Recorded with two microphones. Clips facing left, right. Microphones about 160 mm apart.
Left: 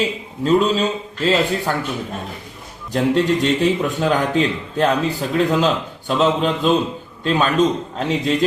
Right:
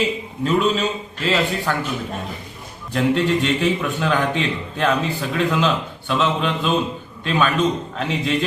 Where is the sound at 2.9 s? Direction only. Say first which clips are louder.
Left 2 dB; 35° left (ahead or behind).